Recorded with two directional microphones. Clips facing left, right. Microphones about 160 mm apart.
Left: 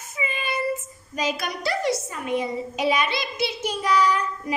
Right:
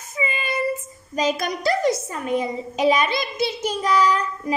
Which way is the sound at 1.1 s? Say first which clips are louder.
Right 4 dB; 45° right (ahead or behind).